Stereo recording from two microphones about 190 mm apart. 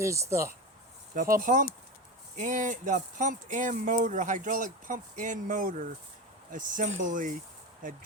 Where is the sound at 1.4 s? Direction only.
40° right (ahead or behind).